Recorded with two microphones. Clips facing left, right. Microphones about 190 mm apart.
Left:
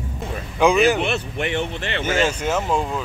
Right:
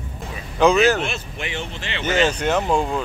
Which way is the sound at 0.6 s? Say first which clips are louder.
Right 1 dB; 15° left (ahead or behind).